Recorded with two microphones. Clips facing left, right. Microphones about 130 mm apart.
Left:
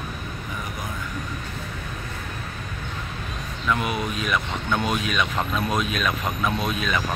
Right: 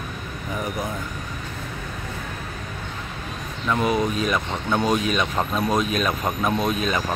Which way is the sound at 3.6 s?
35° right (ahead or behind).